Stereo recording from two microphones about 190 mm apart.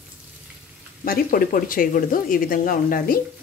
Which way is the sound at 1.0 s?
50° left (ahead or behind).